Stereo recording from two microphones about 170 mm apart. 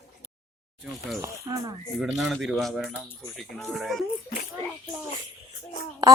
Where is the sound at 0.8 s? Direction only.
Centre (ahead or behind).